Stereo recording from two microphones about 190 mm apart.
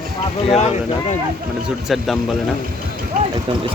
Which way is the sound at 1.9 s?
Centre (ahead or behind).